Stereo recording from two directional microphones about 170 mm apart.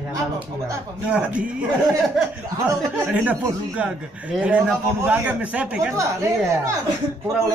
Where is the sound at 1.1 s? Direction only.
5° right (ahead or behind).